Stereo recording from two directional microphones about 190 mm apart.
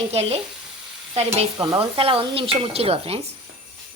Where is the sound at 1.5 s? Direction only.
20° right (ahead or behind).